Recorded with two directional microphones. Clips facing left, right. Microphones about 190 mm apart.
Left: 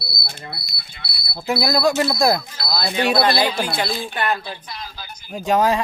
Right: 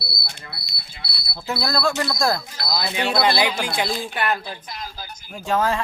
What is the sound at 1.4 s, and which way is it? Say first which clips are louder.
Speech: left 5 dB; 15° left (ahead or behind).